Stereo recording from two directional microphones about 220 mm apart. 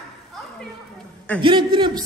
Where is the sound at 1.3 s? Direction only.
20° right (ahead or behind).